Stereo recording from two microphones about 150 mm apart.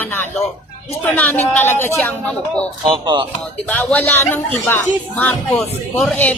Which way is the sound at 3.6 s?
10° left (ahead or behind).